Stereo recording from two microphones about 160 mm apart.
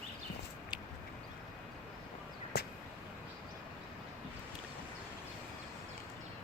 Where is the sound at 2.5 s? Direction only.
85° left.